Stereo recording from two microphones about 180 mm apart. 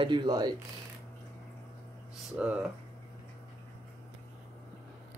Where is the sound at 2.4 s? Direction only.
5° right (ahead or behind).